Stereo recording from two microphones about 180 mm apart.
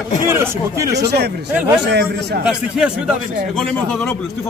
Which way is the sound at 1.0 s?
65° right (ahead or behind).